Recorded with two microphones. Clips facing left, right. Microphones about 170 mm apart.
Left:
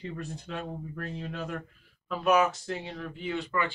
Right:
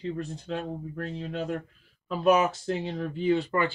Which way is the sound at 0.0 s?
30° right (ahead or behind).